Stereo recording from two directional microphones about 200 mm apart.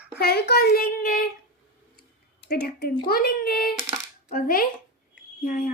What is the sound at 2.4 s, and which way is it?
Speech, 55° left (ahead or behind).